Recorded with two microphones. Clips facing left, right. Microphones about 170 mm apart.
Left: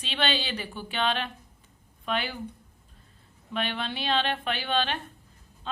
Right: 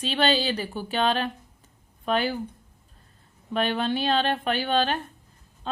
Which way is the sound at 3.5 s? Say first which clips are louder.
Right 7 dB; 45° right (ahead or behind).